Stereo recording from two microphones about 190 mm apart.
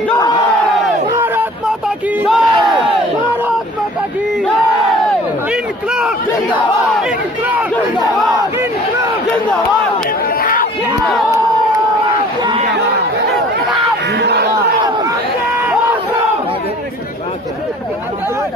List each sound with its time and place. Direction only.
0.1 s crowd: 20° left (ahead or behind)
1.1 s a sound: 10° right (ahead or behind)
2.2 s battle cry: centre (ahead or behind)
5.5 s a sound: 5° right (ahead or behind)
6.5 s battle cry: 5° right (ahead or behind)
14.1 s crowd: 60° right (ahead or behind)